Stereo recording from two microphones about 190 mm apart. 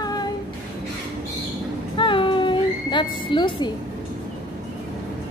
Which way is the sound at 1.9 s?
25° left (ahead or behind).